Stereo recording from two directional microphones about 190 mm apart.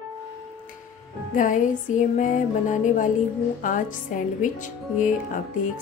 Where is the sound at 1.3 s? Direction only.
45° left (ahead or behind).